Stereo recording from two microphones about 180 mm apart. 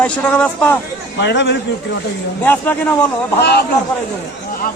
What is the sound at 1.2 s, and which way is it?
Speech, 75° left (ahead or behind).